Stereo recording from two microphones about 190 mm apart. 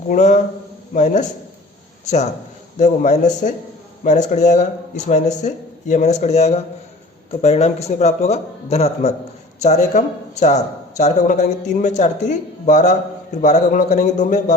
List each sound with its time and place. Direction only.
0.1 s speech: 40° left (ahead or behind)
2.7 s speech: 40° left (ahead or behind)